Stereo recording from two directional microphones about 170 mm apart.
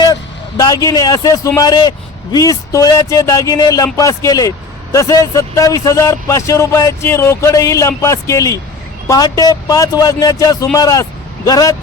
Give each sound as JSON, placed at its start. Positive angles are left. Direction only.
{"t": 0.0, "sound": "speech", "side_deg": 25}